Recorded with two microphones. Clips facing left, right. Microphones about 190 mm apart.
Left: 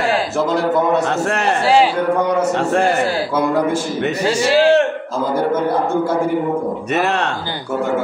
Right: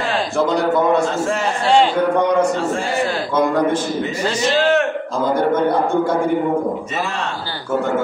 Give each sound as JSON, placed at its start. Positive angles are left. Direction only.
{"t": 0.5, "sound": "a man's voice", "side_deg": 0}
{"t": 1.0, "sound": "a man's voice", "side_deg": 65}
{"t": 4.3, "sound": "a man's voice", "side_deg": 10}
{"t": 7.0, "sound": "a man's voice", "side_deg": 65}